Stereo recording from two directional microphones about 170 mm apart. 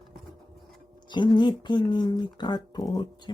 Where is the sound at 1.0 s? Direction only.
25° left (ahead or behind).